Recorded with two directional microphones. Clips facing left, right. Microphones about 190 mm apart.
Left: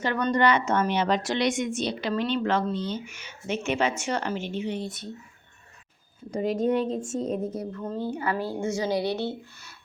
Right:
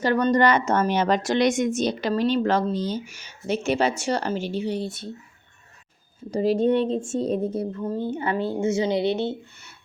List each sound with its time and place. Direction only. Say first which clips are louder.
0.0 s a woman's voice: right 4 dB; 40° right (ahead or behind)
6.3 s speech: right 4 dB; 30° right (ahead or behind)
7.8 s speech: right 3 dB; 15° right (ahead or behind)